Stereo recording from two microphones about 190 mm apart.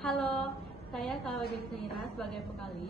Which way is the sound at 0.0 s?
5° left (ahead or behind).